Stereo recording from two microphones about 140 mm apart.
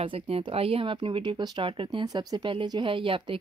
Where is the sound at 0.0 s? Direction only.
40° right (ahead or behind).